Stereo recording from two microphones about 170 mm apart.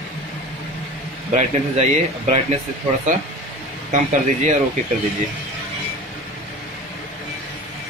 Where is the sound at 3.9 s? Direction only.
45° right (ahead or behind).